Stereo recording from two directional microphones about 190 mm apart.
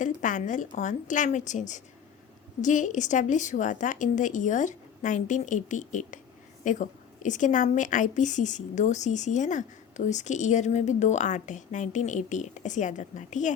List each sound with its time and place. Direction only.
0.0 s a woman's voice: 45° left (ahead or behind)